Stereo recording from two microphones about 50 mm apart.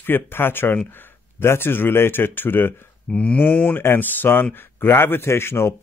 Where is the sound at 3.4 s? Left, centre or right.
Left.